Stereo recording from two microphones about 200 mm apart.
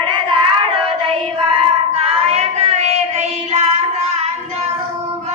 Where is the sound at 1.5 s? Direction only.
30° right (ahead or behind).